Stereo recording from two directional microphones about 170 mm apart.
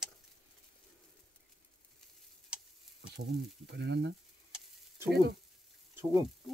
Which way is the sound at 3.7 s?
90° right.